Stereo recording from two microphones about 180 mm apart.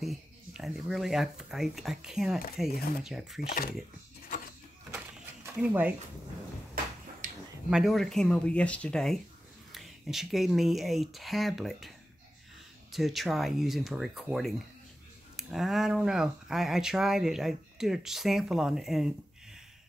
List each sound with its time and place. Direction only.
0.0 s speech: centre (ahead or behind)
3.3 s speech: 55° left (ahead or behind)
4.9 s a sound: 10° right (ahead or behind)
7.2 s a sound: 45° right (ahead or behind)
7.7 s speech: centre (ahead or behind)
12.9 s speech: centre (ahead or behind)